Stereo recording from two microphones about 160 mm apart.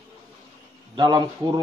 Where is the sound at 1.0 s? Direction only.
25° right (ahead or behind).